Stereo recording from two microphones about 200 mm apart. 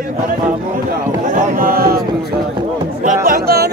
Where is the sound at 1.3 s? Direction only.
40° right (ahead or behind).